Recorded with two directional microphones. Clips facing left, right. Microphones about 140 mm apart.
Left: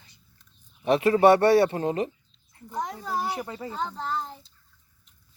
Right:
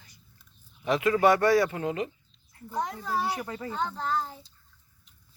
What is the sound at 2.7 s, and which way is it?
Speech, centre (ahead or behind).